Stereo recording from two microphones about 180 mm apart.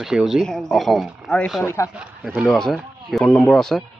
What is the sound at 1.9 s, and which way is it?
Speech, 5° right (ahead or behind).